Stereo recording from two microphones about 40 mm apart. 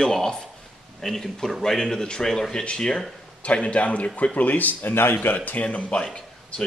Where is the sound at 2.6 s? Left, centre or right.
Left.